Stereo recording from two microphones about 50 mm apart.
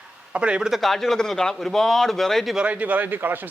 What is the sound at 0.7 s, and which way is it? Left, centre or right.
A man's voice, centre.